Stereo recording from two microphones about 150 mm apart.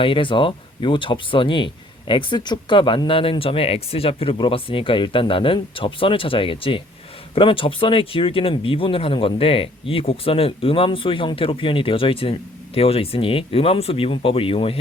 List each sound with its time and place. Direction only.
0.0 s speech: 35° left (ahead or behind)